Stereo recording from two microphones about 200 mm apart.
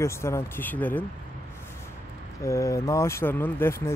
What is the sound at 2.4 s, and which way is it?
Speech, 15° left (ahead or behind).